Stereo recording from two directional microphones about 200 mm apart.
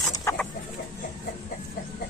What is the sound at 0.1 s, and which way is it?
Chicken, 15° left (ahead or behind).